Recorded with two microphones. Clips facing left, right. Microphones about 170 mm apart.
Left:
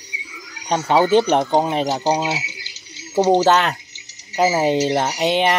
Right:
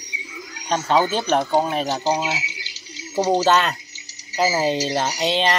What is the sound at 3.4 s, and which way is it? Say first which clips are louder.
Speech: left 2 dB; 15° left (ahead or behind).